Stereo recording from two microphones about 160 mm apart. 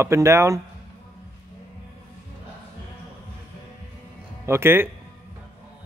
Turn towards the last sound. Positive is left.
turn(degrees=-15)  # may be behind; listen again after turning